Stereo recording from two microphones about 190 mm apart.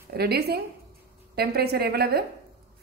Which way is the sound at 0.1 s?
55° right (ahead or behind).